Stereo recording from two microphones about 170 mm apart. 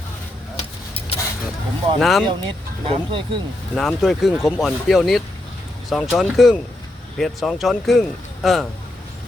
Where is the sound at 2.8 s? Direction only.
35° right (ahead or behind).